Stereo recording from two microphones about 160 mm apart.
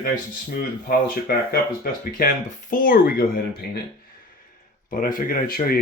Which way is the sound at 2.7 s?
60° left (ahead or behind).